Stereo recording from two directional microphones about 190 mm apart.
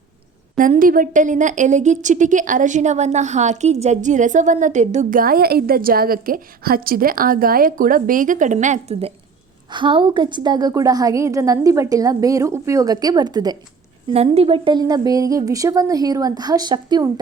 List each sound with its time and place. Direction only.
0.6 s a woman's voice: 45° right (ahead or behind); by 13.6 s 20° right (ahead or behind)
14.1 s a woman's voice: 30° right (ahead or behind)